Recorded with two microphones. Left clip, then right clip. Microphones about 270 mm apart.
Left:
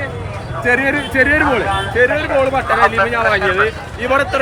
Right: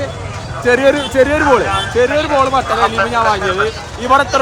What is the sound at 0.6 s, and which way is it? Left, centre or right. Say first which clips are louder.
Speech: right 4 dB; centre.